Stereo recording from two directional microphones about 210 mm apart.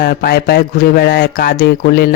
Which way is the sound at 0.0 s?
45° left (ahead or behind).